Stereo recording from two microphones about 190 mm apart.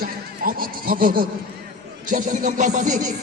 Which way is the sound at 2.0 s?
45° right (ahead or behind).